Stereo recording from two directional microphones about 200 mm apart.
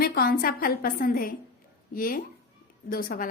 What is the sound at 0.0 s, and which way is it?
A woman's voice, 50° left (ahead or behind).